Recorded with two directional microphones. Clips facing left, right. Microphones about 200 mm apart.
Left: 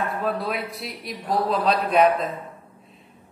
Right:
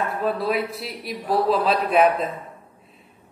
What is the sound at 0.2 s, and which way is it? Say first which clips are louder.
Speech: right 3 dB; centre (ahead or behind).